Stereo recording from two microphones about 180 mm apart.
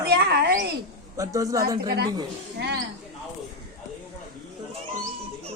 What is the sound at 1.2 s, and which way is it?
Speech, 20° right (ahead or behind).